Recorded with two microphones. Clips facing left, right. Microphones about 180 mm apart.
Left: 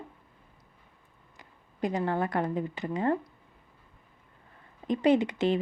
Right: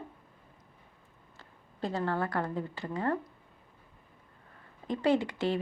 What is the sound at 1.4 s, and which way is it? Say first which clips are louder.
Speech: left 5 dB; 15° left (ahead or behind).